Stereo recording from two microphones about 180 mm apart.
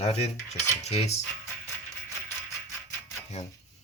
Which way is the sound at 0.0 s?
35° left (ahead or behind).